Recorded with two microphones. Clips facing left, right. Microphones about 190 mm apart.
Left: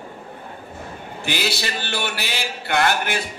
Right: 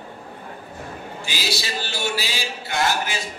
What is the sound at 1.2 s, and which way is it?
Music, 60° left (ahead or behind).